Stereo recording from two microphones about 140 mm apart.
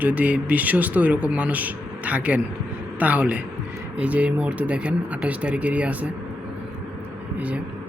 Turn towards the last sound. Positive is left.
turn(degrees=-10)  # may be behind; listen again after turning